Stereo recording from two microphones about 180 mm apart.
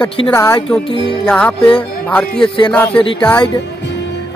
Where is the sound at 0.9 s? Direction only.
30° left (ahead or behind).